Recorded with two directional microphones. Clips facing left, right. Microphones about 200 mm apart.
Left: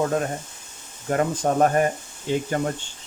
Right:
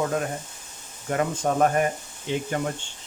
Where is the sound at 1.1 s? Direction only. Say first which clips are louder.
Left 2 dB; 40° left (ahead or behind).